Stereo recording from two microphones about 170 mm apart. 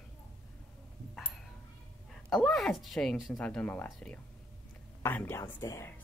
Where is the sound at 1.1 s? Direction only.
5° left (ahead or behind).